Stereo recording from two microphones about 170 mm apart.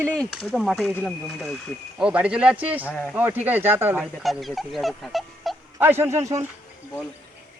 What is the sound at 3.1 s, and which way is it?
Speech, 10° right (ahead or behind).